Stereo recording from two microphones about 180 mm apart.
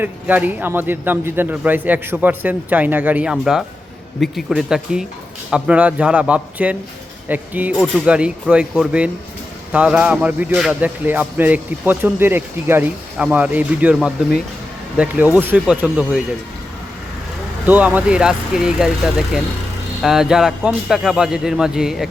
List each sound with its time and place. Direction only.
0.0 s a man's voice: 10° right (ahead or behind)
17.7 s a man's voice: 10° right (ahead or behind)